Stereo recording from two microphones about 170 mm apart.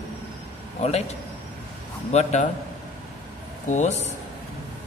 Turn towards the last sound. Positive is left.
turn(degrees=45)  # may be behind; listen again after turning